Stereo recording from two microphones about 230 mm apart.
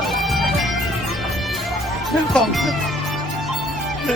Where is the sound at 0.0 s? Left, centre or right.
Centre.